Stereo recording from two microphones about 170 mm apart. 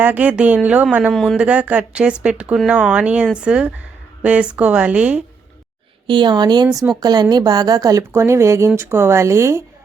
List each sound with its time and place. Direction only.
0.0 s speech: 10° right (ahead or behind)
6.1 s a woman's voice: 25° right (ahead or behind)